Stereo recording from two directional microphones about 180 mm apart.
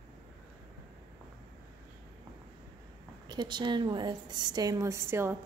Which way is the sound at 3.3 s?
25° right (ahead or behind).